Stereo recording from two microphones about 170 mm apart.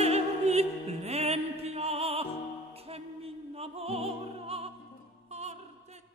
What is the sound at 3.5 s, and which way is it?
Opera, 35° right (ahead or behind).